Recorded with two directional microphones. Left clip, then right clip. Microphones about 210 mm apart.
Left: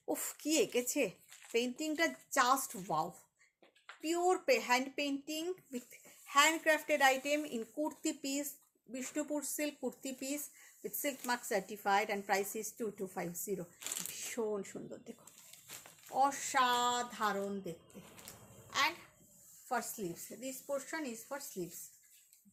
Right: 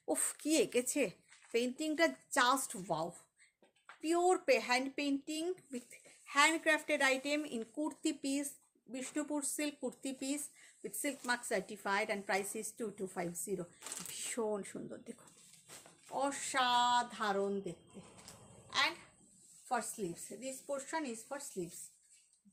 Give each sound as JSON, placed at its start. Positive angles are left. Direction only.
{"t": 0.0, "sound": "a child's voice", "side_deg": -25}